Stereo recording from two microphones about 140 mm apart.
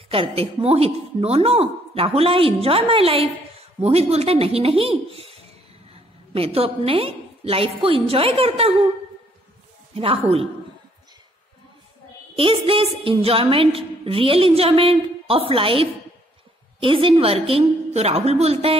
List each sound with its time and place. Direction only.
0.1 s a woman's voice: 40° right (ahead or behind)
9.9 s a woman's voice: 40° right (ahead or behind)
12.4 s a woman's voice: 40° right (ahead or behind)